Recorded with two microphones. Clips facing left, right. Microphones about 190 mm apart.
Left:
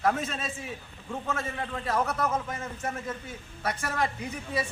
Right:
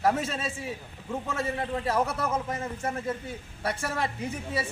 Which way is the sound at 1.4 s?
35° right (ahead or behind).